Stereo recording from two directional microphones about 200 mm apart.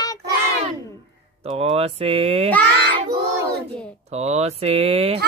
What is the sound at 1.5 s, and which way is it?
Speech, 30° right (ahead or behind).